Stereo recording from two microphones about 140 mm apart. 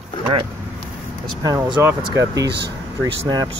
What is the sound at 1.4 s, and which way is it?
Speech, 30° right (ahead or behind).